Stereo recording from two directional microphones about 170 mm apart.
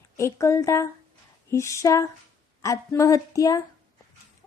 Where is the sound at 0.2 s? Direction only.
15° left (ahead or behind).